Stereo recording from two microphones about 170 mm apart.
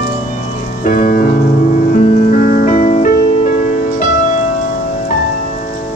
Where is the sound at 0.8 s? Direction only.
50° left (ahead or behind).